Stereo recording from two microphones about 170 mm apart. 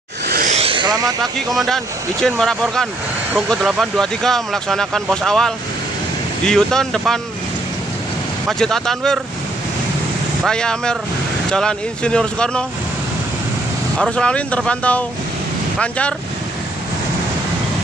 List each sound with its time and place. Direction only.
0.5 s vehicle: 35° right (ahead or behind)
1.2 s speech: centre (ahead or behind)
8.5 s speech: 5° left (ahead or behind)
10.4 s speech: 5° left (ahead or behind)
13.9 s speech: 5° left (ahead or behind)